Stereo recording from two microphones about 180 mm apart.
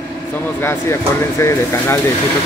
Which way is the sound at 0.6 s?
15° left (ahead or behind).